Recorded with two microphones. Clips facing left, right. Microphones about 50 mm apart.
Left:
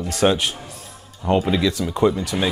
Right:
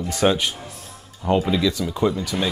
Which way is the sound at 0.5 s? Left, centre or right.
Centre.